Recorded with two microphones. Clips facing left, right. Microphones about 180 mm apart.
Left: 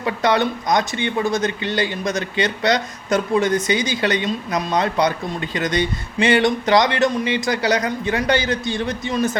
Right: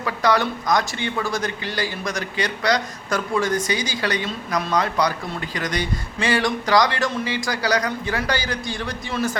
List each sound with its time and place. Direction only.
0.0 s speech: 25° left (ahead or behind)